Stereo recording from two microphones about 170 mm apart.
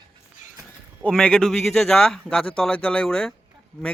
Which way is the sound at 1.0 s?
5° left (ahead or behind).